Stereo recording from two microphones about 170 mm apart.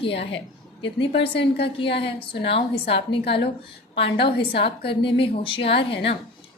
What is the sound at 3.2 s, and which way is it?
Speech, 80° left.